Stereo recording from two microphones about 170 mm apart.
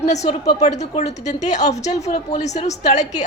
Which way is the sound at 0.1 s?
40° left (ahead or behind).